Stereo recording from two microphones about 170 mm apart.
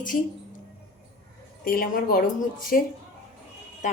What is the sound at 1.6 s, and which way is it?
A woman's voice, 55° left (ahead or behind).